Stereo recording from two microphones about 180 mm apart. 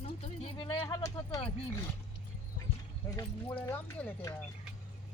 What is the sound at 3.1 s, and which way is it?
Speech, 10° left (ahead or behind).